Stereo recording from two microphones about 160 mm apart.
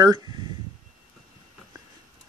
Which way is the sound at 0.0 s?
25° right (ahead or behind).